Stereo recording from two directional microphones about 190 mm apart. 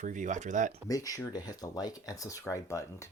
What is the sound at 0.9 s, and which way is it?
Speech, 20° left (ahead or behind).